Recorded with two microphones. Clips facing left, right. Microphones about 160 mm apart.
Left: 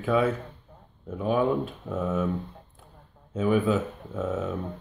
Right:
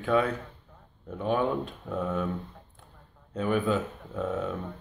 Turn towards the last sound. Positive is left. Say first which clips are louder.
# left 1 dB
turn(degrees=0)  # may be behind; listen again after turning